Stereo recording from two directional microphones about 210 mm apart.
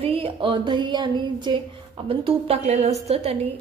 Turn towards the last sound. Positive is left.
turn(degrees=-30)  # may be behind; listen again after turning